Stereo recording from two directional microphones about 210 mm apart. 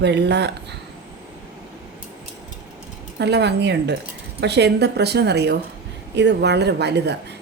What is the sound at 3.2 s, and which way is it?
A woman's voice, 55° right (ahead or behind).